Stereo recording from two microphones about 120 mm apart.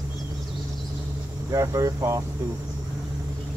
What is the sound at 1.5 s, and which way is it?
Speech, 25° right (ahead or behind).